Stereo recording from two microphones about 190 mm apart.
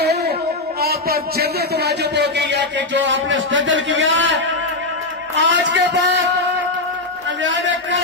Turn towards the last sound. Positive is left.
turn(degrees=-75)  # may be behind; listen again after turning